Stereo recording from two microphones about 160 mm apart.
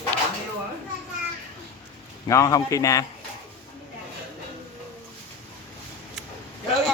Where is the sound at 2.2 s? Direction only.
20° left (ahead or behind).